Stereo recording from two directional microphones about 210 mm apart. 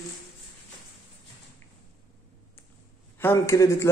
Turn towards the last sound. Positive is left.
turn(degrees=15)  # may be behind; listen again after turning